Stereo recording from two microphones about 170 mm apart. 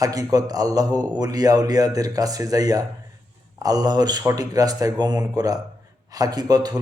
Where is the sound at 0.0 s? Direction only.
20° right (ahead or behind).